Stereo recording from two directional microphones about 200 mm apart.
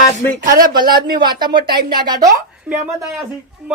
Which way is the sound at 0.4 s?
45° right (ahead or behind).